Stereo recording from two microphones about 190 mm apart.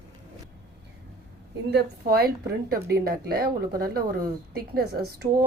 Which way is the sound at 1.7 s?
55° right (ahead or behind).